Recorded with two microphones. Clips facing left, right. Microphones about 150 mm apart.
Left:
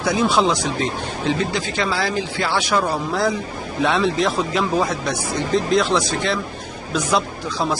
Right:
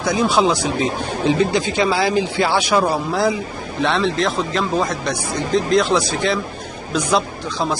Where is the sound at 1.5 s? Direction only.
15° right (ahead or behind).